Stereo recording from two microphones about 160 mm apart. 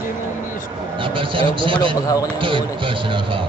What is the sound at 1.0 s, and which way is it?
Speech, 35° right (ahead or behind).